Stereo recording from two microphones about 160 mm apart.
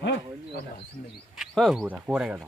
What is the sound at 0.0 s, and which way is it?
Wild animals, 90° left.